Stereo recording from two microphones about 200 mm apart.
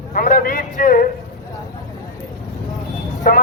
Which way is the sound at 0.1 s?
45° left (ahead or behind).